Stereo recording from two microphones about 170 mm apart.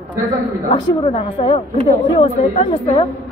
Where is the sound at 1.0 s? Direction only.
35° left (ahead or behind).